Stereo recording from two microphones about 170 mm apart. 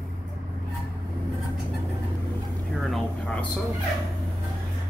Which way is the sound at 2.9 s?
5° left (ahead or behind).